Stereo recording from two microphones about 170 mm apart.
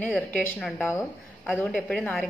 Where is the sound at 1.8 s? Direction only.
5° left (ahead or behind).